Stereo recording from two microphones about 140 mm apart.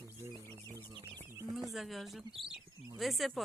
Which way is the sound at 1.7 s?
Centre (ahead or behind).